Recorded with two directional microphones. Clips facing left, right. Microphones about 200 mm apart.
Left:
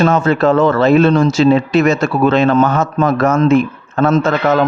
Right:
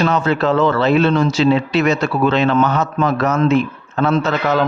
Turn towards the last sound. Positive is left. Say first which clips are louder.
# left 4 dB
turn(degrees=50)  # may be behind; listen again after turning